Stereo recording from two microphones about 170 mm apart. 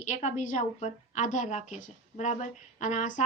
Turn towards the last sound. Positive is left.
turn(degrees=45)  # may be behind; listen again after turning